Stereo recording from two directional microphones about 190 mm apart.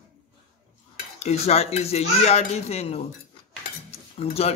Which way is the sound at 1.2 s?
35° left (ahead or behind).